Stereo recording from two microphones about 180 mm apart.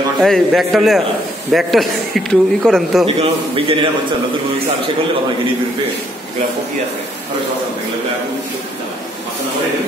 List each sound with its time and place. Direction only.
0.2 s speech: centre (ahead or behind)
3.2 s a man's voice: 30° right (ahead or behind)